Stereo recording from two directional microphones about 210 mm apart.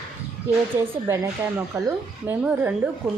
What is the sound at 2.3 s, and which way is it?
Speech, 5° right (ahead or behind).